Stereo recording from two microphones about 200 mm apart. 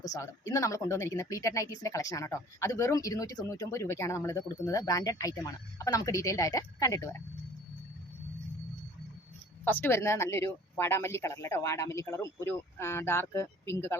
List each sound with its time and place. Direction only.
0.1 s speech: 15° left (ahead or behind)
9.6 s speech: 10° left (ahead or behind)